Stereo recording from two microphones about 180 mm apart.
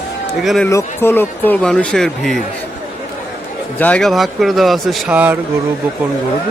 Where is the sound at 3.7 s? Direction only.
10° left (ahead or behind); by 5.4 s 10° right (ahead or behind).